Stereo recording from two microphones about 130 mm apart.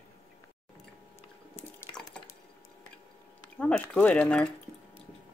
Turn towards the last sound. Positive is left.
turn(degrees=10)  # may be behind; listen again after turning